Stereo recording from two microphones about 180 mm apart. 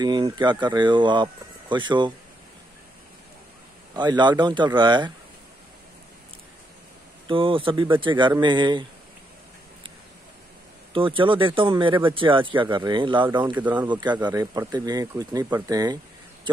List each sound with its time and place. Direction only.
0.0 s speech: 25° right (ahead or behind)
3.9 s speech: 25° right (ahead or behind)
7.2 s speech: 30° right (ahead or behind)
10.9 s speech: 30° right (ahead or behind)
13.5 s speech: 10° right (ahead or behind)
13.8 s speech: 25° right (ahead or behind)